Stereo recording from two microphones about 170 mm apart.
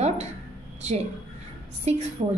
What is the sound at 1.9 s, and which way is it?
Speech, 40° right (ahead or behind).